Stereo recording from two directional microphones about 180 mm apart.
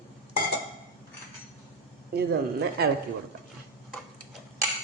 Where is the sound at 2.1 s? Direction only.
60° right (ahead or behind).